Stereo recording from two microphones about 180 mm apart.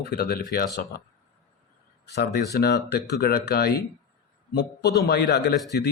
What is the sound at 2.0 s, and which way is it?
A man's voice, 65° left (ahead or behind).